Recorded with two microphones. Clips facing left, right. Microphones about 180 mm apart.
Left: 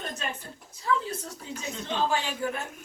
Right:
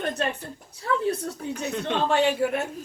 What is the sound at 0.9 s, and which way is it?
A man's voice, 60° right (ahead or behind).